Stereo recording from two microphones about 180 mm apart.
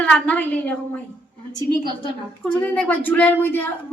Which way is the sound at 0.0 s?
5° left (ahead or behind).